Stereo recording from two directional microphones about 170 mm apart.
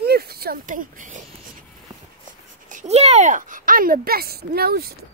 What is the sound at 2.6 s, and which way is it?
Speech, 45° right (ahead or behind).